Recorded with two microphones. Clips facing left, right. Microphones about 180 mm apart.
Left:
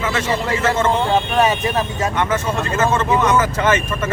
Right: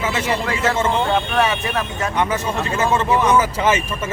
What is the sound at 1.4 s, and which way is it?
Speech, 20° left (ahead or behind).